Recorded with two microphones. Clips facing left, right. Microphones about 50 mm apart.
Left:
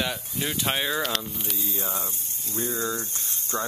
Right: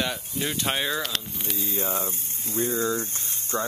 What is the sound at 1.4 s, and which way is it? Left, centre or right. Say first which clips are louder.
Speech: right 3 dB; right.